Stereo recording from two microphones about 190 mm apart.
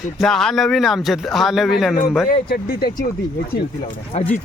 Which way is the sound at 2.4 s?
55° left (ahead or behind).